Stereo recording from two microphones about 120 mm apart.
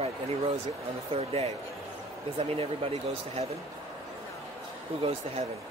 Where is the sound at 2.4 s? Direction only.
55° right (ahead or behind).